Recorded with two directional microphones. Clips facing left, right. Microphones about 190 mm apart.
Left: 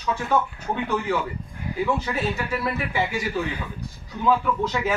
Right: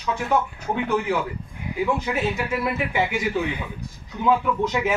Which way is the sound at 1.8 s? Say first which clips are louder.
Right 1 dB; 15° right (ahead or behind).